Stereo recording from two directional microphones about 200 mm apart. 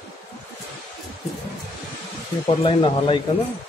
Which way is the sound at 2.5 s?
25° left (ahead or behind).